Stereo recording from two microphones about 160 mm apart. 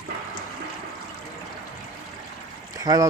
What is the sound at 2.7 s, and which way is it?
Boat, 20° right (ahead or behind).